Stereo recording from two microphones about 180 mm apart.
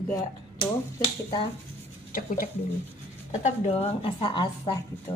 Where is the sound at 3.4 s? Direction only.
30° left (ahead or behind).